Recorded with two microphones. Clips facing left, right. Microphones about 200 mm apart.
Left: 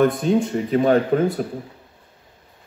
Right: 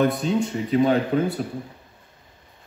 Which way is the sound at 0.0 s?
50° left (ahead or behind).